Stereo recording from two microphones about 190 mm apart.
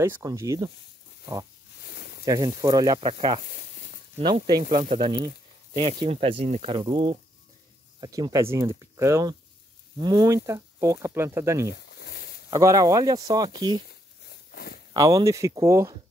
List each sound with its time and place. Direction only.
0.0 s speech: 15° right (ahead or behind)
1.8 s snake: 55° left (ahead or behind)
2.2 s speech: 20° right (ahead or behind)
3.4 s a sound: 50° left (ahead or behind)
4.2 s speech: 20° right (ahead or behind)
11.7 s a sound: 60° left (ahead or behind)
12.4 s speech: 20° right (ahead or behind)
14.5 s a sound: 55° left (ahead or behind)
15.0 s speech: 20° right (ahead or behind)